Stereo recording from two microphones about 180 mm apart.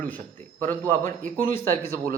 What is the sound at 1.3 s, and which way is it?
Speech, 50° right (ahead or behind).